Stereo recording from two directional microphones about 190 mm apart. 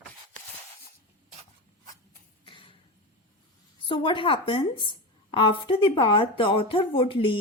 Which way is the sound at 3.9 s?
25° left (ahead or behind).